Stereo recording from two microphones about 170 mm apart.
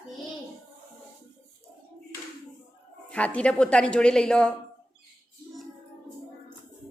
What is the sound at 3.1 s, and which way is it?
A woman's voice, 10° left (ahead or behind).